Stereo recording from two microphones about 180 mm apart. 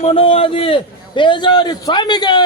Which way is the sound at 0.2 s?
30° left (ahead or behind).